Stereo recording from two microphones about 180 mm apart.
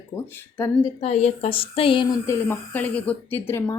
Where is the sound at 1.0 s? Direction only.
35° left (ahead or behind).